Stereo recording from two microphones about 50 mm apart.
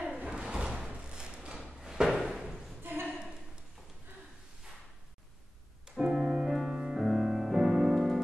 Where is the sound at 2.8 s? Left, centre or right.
Right.